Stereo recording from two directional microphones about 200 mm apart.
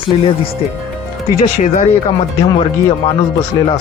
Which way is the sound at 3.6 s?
20° left (ahead or behind).